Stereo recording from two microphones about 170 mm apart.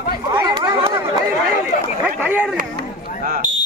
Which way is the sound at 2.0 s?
10° right (ahead or behind).